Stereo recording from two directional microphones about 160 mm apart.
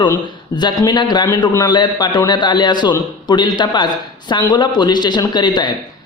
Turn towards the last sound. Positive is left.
turn(degrees=25)  # may be behind; listen again after turning